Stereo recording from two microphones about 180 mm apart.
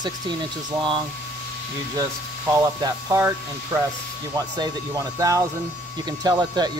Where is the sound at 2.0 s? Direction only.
15° right (ahead or behind).